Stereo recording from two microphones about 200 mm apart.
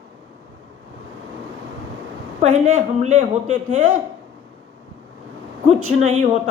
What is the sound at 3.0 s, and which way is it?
Speech, 35° right (ahead or behind).